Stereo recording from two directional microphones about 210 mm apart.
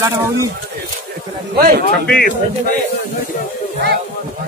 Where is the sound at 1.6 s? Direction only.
45° right (ahead or behind).